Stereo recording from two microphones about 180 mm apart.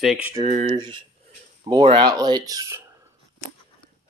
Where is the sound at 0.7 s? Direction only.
25° right (ahead or behind).